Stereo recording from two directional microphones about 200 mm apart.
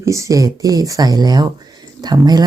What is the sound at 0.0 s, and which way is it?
Speech, 15° right (ahead or behind).